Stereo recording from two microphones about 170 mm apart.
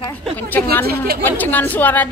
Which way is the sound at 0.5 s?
10° left (ahead or behind).